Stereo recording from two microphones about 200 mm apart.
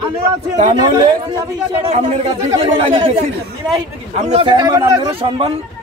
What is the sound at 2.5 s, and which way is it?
Speech, 25° right (ahead or behind).